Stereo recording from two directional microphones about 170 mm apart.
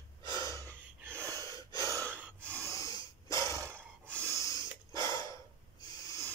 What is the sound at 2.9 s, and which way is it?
Snort, 20° left (ahead or behind).